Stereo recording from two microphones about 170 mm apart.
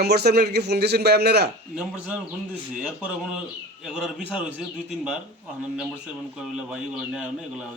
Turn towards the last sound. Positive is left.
turn(degrees=-5)  # may be behind; listen again after turning